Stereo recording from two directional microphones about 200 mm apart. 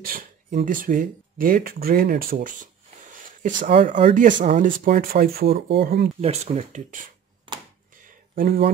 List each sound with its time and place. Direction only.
0.0 s speech: 45° right (ahead or behind)
3.8 s speech: 25° right (ahead or behind)
4.1 s speech: 40° right (ahead or behind)
6.2 s speech: 35° right (ahead or behind)
8.4 s speech: 50° right (ahead or behind)